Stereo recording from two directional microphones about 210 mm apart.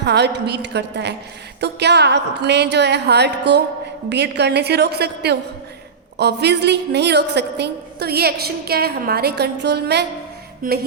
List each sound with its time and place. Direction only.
0.0 s a woman's voice: 55° right (ahead or behind)